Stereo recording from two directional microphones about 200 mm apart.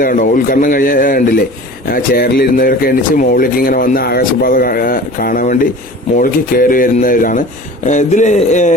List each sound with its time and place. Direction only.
0.0 s a man's voice: 45° left (ahead or behind)